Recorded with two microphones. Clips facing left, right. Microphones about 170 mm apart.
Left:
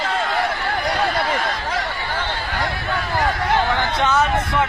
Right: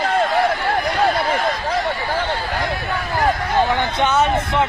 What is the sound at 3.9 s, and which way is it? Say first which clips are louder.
Speech: right 1 dB; 20° right (ahead or behind).